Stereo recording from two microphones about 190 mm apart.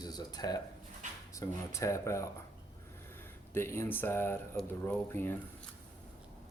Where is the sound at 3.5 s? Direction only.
15° left (ahead or behind).